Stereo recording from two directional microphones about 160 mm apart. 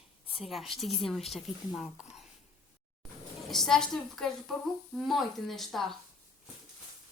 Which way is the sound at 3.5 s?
Centre (ahead or behind).